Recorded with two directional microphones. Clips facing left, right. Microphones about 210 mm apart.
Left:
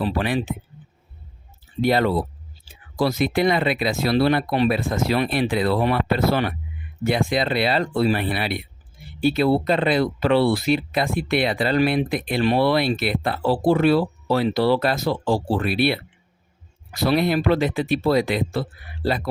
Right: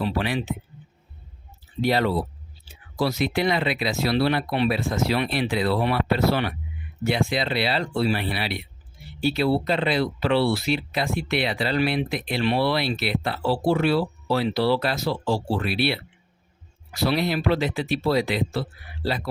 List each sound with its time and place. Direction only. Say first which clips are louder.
0.0 s speech: left 3 dB; 45° left (ahead or behind)
1.8 s speech: left 3 dB; 50° left (ahead or behind)